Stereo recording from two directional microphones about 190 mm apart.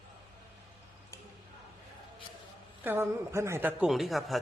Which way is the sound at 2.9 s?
15° right (ahead or behind).